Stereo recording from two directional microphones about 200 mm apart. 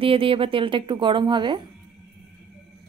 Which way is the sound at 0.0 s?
25° right (ahead or behind).